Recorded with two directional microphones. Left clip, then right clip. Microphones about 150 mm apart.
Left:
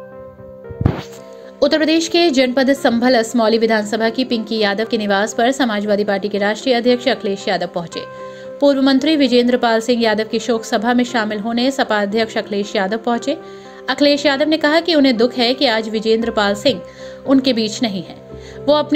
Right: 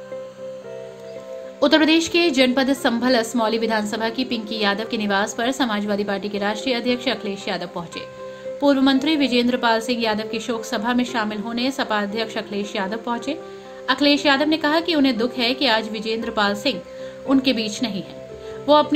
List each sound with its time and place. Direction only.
1.6 s a woman's voice: 30° left (ahead or behind)